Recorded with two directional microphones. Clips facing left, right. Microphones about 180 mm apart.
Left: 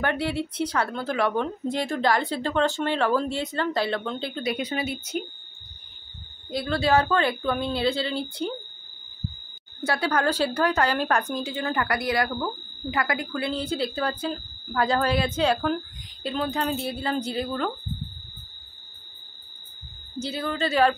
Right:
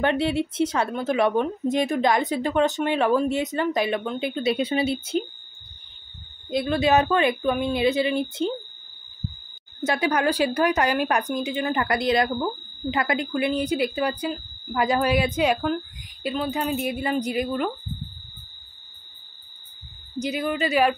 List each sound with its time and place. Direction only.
0.0 s speech: 20° right (ahead or behind)
4.4 s speech: 25° right (ahead or behind)
6.5 s speech: 20° right (ahead or behind)
9.8 s speech: 15° right (ahead or behind)
20.2 s speech: 15° right (ahead or behind)